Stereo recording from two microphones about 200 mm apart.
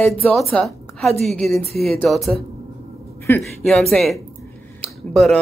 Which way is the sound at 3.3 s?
10° left (ahead or behind).